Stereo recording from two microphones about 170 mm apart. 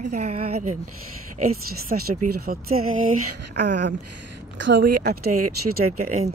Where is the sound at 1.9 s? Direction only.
45° right (ahead or behind).